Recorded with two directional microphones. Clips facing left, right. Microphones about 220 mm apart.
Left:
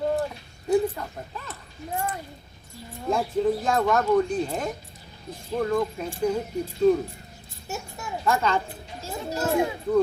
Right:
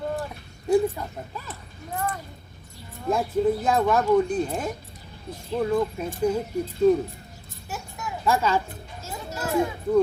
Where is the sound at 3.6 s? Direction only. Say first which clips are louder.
Right 1 dB; 10° right (ahead or behind).